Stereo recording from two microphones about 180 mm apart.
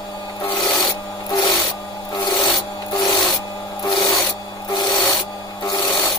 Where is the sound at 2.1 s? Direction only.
25° left (ahead or behind).